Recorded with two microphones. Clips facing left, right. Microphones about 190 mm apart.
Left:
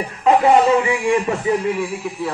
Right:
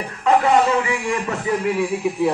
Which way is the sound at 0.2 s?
25° left (ahead or behind).